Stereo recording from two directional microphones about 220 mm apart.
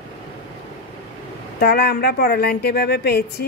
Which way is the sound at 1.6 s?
45° left (ahead or behind).